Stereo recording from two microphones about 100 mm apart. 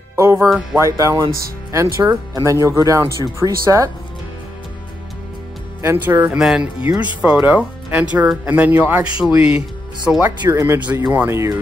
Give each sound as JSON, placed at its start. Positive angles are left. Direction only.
{"t": 0.1, "sound": "music", "side_deg": -30}
{"t": 0.7, "sound": "speech", "side_deg": -30}
{"t": 1.7, "sound": "speech", "side_deg": -30}
{"t": 5.8, "sound": "speech", "side_deg": -25}
{"t": 9.2, "sound": "speech", "side_deg": -10}
{"t": 10.5, "sound": "speech", "side_deg": -25}